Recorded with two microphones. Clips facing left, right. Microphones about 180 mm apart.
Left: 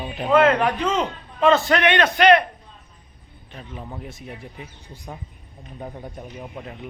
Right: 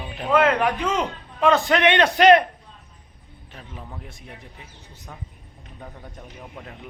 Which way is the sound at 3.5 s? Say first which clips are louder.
Left 4 dB; centre (ahead or behind).